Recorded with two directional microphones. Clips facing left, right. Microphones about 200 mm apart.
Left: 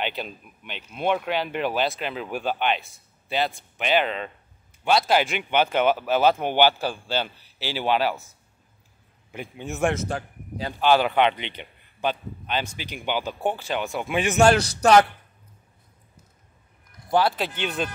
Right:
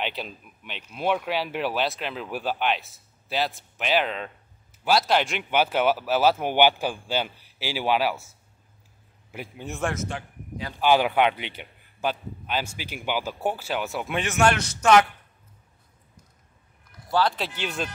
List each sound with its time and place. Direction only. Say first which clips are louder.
0.0 s speech: left 2 dB; centre (ahead or behind)
9.3 s speech: left 2 dB; 5° right (ahead or behind)
9.9 s a man's voice: left 3 dB; 35° left (ahead or behind)
10.8 s speech: left 1 dB; 10° right (ahead or behind)
14.4 s speech: left 4 dB; 35° left (ahead or behind)
17.1 s speech: left 2 dB; 15° left (ahead or behind)
17.6 s speech: left 3 dB; centre (ahead or behind)